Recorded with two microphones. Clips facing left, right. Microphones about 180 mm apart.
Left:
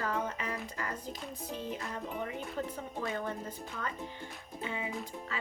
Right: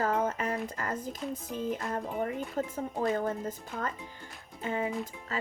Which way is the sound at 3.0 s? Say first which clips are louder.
Right 7 dB; 40° right (ahead or behind).